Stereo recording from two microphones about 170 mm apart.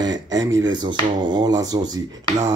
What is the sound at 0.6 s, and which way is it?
Speech, 25° right (ahead or behind).